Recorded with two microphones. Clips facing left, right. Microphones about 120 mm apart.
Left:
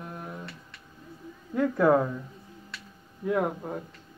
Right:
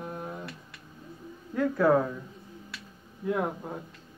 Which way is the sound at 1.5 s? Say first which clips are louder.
Left 1 dB; 10° left (ahead or behind).